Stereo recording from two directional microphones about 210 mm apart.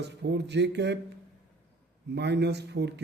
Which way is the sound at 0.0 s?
55° right (ahead or behind).